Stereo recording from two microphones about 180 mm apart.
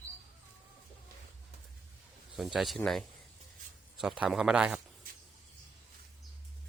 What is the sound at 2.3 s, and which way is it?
Speech, centre (ahead or behind).